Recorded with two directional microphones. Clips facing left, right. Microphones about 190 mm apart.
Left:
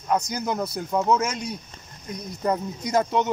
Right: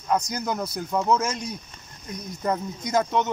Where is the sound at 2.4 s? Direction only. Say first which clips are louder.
Left 2 dB; 5° left (ahead or behind).